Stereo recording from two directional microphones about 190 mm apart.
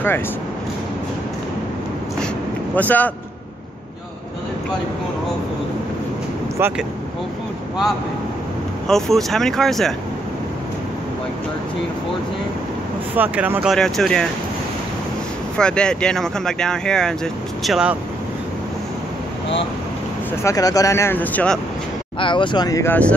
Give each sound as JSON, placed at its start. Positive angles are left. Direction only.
{"t": 2.7, "sound": "speech", "side_deg": 10}
{"t": 6.6, "sound": "speech", "side_deg": -10}
{"t": 8.8, "sound": "speech", "side_deg": 0}
{"t": 13.1, "sound": "speech", "side_deg": -10}
{"t": 15.5, "sound": "speech", "side_deg": 5}
{"t": 20.4, "sound": "speech", "side_deg": 20}
{"t": 22.2, "sound": "speech", "side_deg": 25}